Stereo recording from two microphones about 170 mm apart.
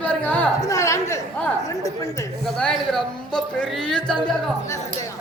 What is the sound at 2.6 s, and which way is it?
Speech, 5° left (ahead or behind).